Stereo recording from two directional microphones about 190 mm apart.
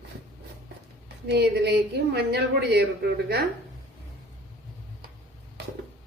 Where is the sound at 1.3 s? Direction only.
60° right (ahead or behind).